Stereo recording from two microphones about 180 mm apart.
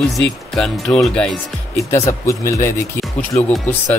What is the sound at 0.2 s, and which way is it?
Speech, 5° left (ahead or behind).